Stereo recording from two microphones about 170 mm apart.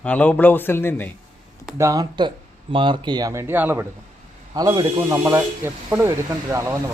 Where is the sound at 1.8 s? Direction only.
20° right (ahead or behind).